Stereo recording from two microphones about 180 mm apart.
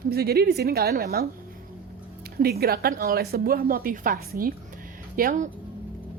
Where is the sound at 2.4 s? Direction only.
60° right (ahead or behind).